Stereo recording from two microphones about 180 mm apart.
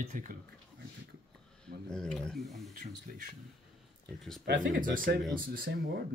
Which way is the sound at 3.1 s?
45° right (ahead or behind).